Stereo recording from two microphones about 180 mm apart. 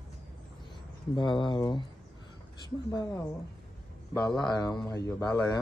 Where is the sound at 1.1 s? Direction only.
25° left (ahead or behind).